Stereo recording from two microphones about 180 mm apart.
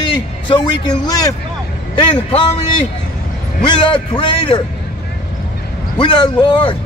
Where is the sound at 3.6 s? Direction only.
25° left (ahead or behind).